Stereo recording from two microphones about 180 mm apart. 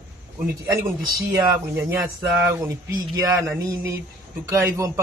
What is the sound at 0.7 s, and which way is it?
Speech, 15° right (ahead or behind).